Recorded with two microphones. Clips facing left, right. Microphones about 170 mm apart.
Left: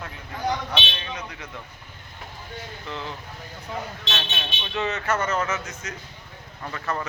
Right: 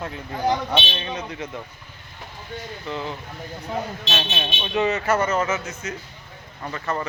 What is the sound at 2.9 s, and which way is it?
Speech, 5° right (ahead or behind).